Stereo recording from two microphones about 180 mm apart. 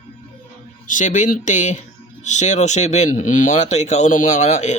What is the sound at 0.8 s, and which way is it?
Speech, 45° left (ahead or behind).